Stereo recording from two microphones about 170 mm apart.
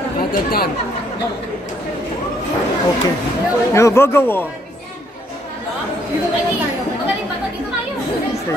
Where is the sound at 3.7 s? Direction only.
15° left (ahead or behind).